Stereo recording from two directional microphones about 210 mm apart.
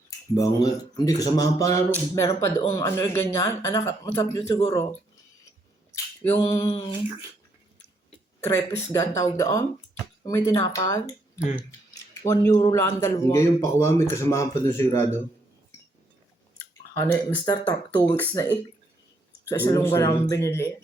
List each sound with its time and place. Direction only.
0.3 s a man's voice: 15° left (ahead or behind)
5.9 s a sound: 15° left (ahead or behind)
8.4 s a man's voice: 15° left (ahead or behind)
12.2 s a man's voice: 15° left (ahead or behind)
17.0 s a man's voice: 10° left (ahead or behind)